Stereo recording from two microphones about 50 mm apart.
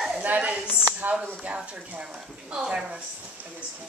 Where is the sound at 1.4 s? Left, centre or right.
Right.